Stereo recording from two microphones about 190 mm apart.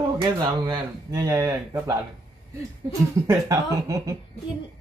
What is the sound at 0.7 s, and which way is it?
Speech, 20° right (ahead or behind).